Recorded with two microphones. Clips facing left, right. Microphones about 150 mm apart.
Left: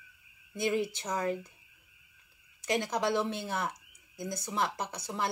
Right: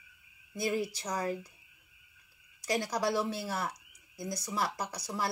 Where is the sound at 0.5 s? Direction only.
25° left (ahead or behind).